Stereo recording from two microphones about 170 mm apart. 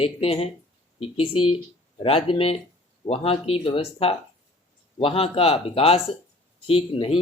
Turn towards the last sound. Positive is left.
turn(degrees=35)  # may be behind; listen again after turning